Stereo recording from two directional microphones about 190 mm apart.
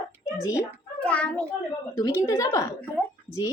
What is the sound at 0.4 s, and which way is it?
A child's voice, 10° left (ahead or behind).